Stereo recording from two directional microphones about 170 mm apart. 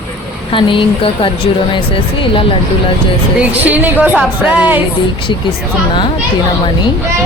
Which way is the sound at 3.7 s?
10° right (ahead or behind).